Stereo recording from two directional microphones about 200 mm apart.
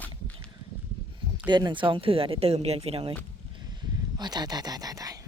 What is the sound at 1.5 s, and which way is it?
Speech, 20° right (ahead or behind).